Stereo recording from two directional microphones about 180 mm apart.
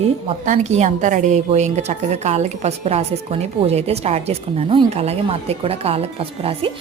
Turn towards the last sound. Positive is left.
turn(degrees=-30)  # may be behind; listen again after turning